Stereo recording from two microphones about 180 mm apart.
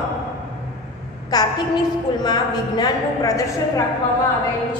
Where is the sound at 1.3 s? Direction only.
20° left (ahead or behind).